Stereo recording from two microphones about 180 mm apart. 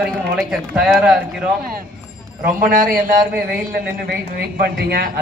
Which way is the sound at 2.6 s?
50° right (ahead or behind).